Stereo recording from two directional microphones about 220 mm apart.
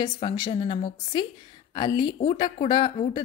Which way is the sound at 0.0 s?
20° left (ahead or behind).